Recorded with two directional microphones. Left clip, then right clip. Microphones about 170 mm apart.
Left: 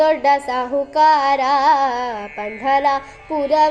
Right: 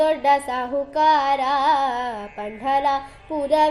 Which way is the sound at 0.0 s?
20° left (ahead or behind).